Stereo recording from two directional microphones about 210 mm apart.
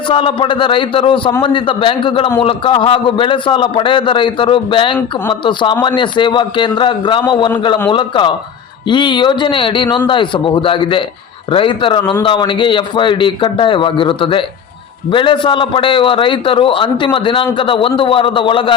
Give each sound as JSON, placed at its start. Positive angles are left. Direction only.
{"t": 0.1, "sound": "a man's voice", "side_deg": 25}